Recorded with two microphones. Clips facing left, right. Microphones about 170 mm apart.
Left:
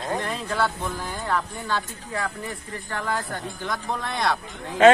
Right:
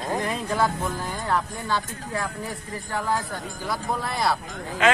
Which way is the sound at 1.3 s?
10° right (ahead or behind).